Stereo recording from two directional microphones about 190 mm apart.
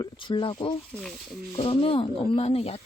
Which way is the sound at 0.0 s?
25° left (ahead or behind).